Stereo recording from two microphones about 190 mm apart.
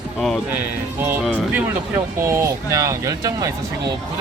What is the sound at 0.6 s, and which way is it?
Speech, 10° right (ahead or behind).